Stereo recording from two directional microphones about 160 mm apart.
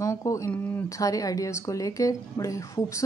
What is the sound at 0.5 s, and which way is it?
Speech, 10° left (ahead or behind).